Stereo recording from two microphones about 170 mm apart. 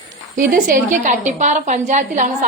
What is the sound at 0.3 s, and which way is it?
A woman's voice, 50° right (ahead or behind).